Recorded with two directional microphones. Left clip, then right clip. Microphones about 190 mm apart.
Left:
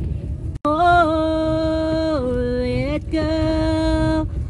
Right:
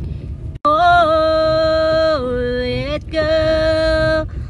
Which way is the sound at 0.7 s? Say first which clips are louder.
Right 3 dB; 35° right (ahead or behind).